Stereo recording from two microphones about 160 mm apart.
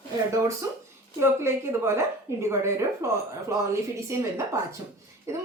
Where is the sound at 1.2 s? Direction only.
15° right (ahead or behind).